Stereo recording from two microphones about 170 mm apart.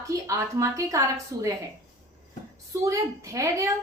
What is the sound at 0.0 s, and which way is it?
A woman's voice, 20° right (ahead or behind).